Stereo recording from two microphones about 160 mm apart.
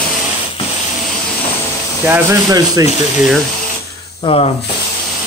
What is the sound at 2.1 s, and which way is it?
Speech, 15° right (ahead or behind).